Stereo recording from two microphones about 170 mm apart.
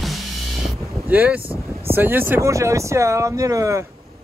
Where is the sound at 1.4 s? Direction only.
35° right (ahead or behind).